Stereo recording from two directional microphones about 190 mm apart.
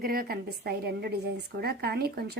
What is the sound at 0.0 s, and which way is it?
A woman's voice, 50° right (ahead or behind).